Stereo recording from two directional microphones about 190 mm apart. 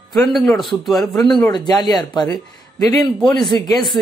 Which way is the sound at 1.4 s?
20° left (ahead or behind).